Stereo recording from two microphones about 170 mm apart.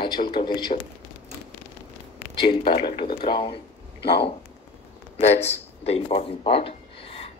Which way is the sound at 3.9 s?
75° left (ahead or behind).